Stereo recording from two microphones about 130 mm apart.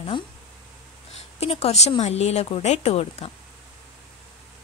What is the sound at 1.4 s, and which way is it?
Speech, 50° left (ahead or behind).